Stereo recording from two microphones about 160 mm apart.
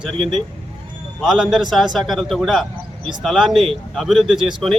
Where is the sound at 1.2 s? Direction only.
Centre (ahead or behind).